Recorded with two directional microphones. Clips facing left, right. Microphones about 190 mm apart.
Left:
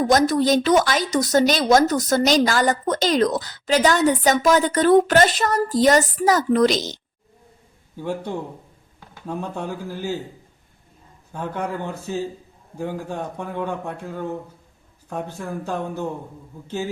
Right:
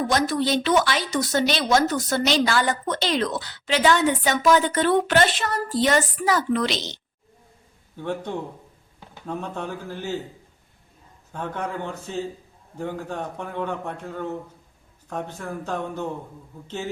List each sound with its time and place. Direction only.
0.1 s a woman's voice: 40° left (ahead or behind)
7.9 s a man's voice: 10° left (ahead or behind)
11.3 s a man's voice: 10° left (ahead or behind)